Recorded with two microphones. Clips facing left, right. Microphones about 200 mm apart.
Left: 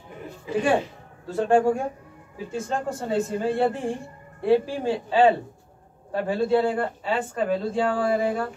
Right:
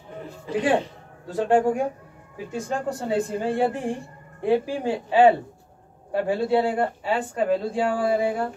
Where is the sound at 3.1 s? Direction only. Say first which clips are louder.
Even; 10° right (ahead or behind).